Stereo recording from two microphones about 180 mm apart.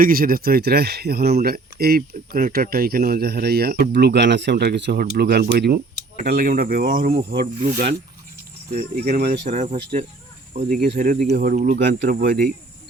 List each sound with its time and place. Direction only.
0.0 s speech: 55° right (ahead or behind)
7.2 s speech: 60° right (ahead or behind)
9.0 s speech: 50° right (ahead or behind)